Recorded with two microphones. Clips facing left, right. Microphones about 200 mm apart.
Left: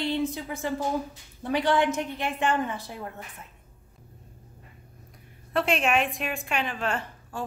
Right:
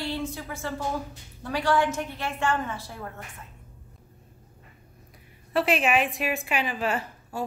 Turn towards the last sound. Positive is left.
turn(degrees=-5)  # may be behind; listen again after turning